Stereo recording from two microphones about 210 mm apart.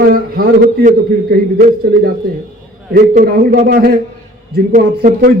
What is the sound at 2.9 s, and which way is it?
A man's voice, 45° right (ahead or behind).